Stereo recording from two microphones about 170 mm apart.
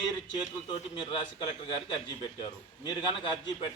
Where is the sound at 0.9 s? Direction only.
25° left (ahead or behind).